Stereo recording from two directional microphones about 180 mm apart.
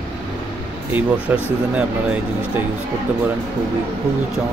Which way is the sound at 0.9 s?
5° right (ahead or behind).